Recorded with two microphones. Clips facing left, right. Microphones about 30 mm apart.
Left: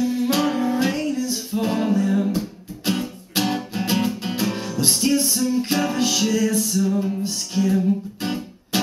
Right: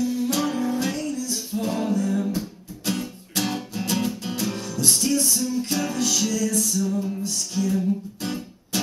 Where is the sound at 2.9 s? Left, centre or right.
Left.